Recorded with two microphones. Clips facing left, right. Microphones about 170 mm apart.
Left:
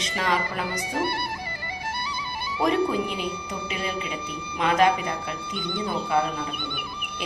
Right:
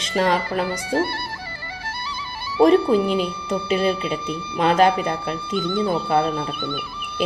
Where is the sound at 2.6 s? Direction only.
30° right (ahead or behind).